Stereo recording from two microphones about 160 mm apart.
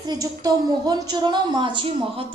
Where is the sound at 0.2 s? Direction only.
25° right (ahead or behind).